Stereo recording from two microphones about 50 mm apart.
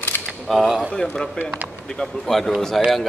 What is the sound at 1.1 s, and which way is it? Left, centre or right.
A man's voice, centre.